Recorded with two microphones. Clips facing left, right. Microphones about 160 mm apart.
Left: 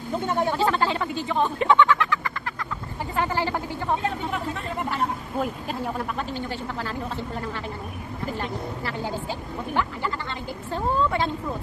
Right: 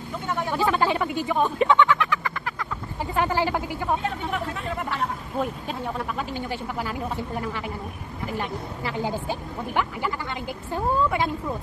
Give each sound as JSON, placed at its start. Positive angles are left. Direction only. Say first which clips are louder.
{"t": 0.3, "sound": "speech", "louder": "left 2 dB", "side_deg": 20}
{"t": 0.7, "sound": "speech", "louder": "right 1 dB", "side_deg": -15}
{"t": 1.8, "sound": "a sound", "louder": "even", "side_deg": -20}
{"t": 3.2, "sound": "speech", "louder": "right 2 dB", "side_deg": -15}
{"t": 4.9, "sound": "speech", "louder": "left 2 dB", "side_deg": 0}
{"t": 6.3, "sound": "speech", "louder": "right 1 dB", "side_deg": -15}